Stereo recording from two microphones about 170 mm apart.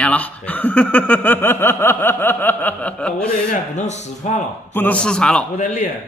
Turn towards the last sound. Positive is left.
turn(degrees=45)  # may be behind; listen again after turning